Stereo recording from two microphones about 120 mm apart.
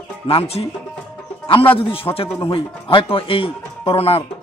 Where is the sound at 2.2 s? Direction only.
20° left (ahead or behind).